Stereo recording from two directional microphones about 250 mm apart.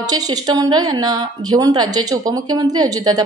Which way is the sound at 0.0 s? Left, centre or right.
Centre.